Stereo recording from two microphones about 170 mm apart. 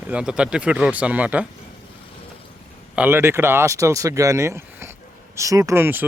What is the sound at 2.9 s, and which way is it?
Speech, 10° right (ahead or behind).